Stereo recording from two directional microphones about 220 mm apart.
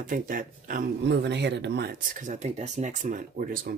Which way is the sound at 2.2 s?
35° right (ahead or behind).